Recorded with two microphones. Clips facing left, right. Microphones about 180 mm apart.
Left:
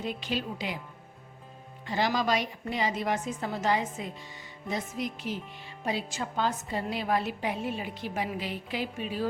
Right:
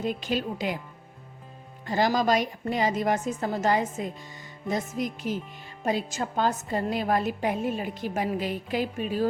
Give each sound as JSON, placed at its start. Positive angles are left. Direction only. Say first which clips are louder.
{"t": 0.0, "sound": "a woman's voice", "louder": "right 4 dB", "side_deg": -45}
{"t": 1.9, "sound": "a woman's voice", "louder": "right 4 dB", "side_deg": -45}